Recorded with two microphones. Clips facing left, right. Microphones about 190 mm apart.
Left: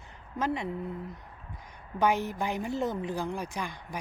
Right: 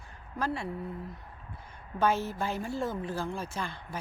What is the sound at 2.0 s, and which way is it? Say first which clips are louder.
A woman's voice: left 1 dB; 15° left (ahead or behind).